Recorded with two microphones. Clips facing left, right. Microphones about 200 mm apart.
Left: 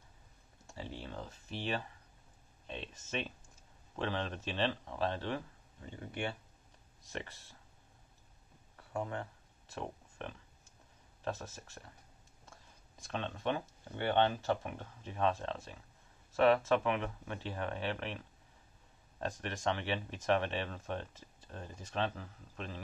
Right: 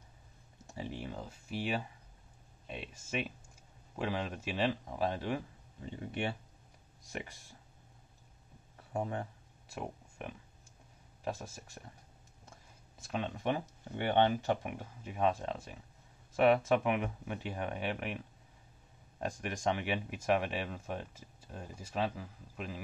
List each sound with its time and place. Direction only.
0.7 s speech: 15° right (ahead or behind)
8.7 s a sound: 20° right (ahead or behind)
11.2 s speech: 10° right (ahead or behind)
12.9 s speech: 5° right (ahead or behind)